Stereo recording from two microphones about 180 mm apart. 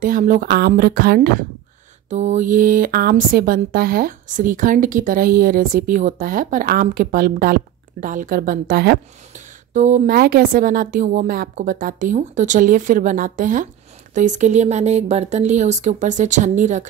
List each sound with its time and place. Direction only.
0.0 s speech: 45° right (ahead or behind)
2.0 s speech: 40° right (ahead or behind); by 9.0 s 65° right (ahead or behind)
9.3 s speech: 45° right (ahead or behind)